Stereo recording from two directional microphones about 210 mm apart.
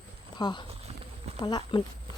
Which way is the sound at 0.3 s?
20° left (ahead or behind).